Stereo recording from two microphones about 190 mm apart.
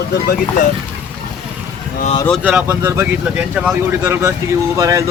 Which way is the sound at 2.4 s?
10° right (ahead or behind).